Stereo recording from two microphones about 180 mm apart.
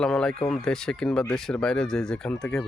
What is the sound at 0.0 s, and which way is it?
Speech, 5° left (ahead or behind).